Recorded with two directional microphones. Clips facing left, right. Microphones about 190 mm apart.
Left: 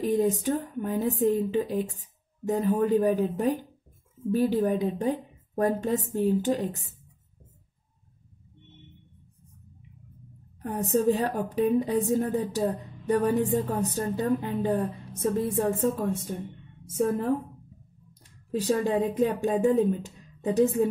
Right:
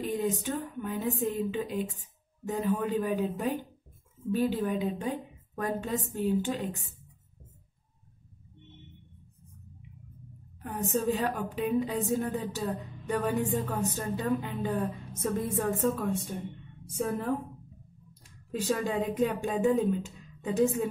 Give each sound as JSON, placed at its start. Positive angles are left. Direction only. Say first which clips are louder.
{"t": 0.0, "sound": "speech", "louder": "left 6 dB", "side_deg": 40}
{"t": 10.6, "sound": "speech", "louder": "left 5 dB", "side_deg": 40}
{"t": 15.2, "sound": "speech", "louder": "left 4 dB", "side_deg": 30}
{"t": 18.5, "sound": "speech", "louder": "left 5 dB", "side_deg": 40}